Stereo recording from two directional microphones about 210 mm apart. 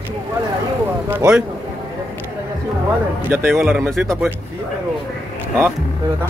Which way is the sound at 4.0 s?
5° right (ahead or behind).